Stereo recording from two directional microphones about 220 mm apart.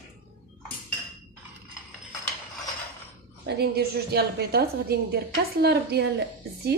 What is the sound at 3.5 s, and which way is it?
A woman's voice, 45° right (ahead or behind).